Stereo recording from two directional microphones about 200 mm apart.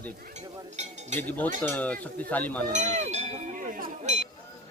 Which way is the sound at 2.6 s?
35° right (ahead or behind).